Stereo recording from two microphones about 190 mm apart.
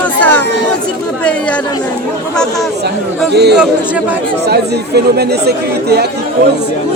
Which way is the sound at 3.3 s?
60° right (ahead or behind).